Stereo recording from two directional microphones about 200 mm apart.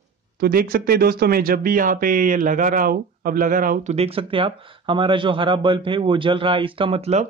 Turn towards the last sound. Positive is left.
turn(degrees=-30)  # may be behind; listen again after turning